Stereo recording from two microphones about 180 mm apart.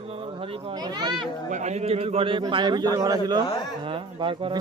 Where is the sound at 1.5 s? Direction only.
40° right (ahead or behind).